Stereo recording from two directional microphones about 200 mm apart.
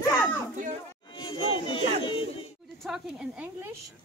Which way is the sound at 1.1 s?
25° left (ahead or behind).